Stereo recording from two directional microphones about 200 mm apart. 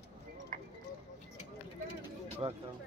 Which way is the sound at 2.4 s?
25° right (ahead or behind).